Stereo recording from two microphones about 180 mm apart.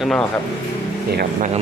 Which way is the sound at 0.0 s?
Centre (ahead or behind).